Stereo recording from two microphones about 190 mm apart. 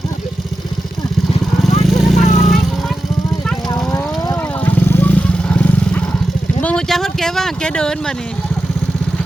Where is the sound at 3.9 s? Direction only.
15° left (ahead or behind).